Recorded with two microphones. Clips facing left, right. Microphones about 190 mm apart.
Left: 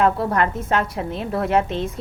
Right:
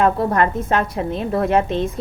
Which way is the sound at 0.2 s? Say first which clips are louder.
Right 3 dB; 20° right (ahead or behind).